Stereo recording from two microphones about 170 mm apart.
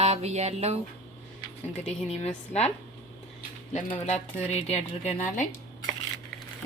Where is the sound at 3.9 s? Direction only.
35° left (ahead or behind).